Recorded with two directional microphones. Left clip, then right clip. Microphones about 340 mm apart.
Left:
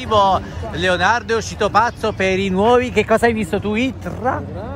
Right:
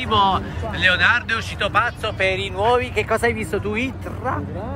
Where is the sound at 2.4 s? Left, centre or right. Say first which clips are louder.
Left 4 dB; left.